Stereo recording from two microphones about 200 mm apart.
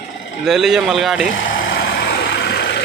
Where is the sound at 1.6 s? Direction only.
45° left (ahead or behind).